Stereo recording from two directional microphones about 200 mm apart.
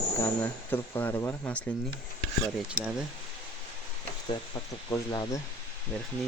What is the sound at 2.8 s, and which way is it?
Speech, 5° right (ahead or behind).